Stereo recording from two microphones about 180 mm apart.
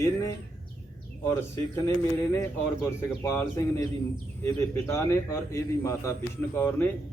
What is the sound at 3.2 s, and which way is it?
Speech, 15° left (ahead or behind).